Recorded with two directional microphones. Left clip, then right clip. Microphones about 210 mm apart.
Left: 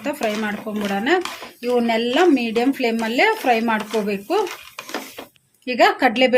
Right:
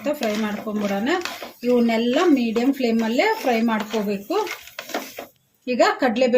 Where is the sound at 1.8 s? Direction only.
50° left (ahead or behind).